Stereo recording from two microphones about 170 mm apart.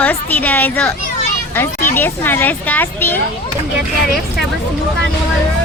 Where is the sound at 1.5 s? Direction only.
15° left (ahead or behind).